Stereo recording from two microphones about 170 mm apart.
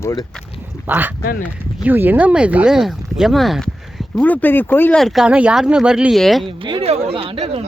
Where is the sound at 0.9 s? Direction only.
10° right (ahead or behind).